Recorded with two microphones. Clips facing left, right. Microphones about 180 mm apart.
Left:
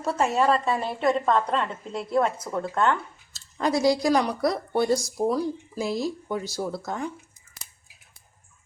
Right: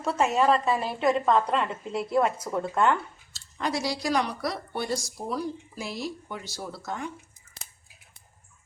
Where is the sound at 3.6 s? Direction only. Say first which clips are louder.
Left 7 dB; 40° left (ahead or behind).